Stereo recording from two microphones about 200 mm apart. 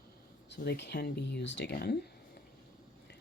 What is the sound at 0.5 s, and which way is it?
Speech, 55° left (ahead or behind).